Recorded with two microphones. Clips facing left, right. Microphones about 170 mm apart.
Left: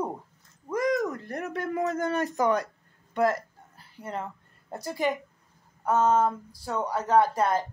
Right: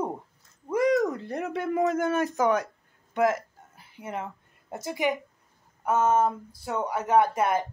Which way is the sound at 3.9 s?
10° right (ahead or behind).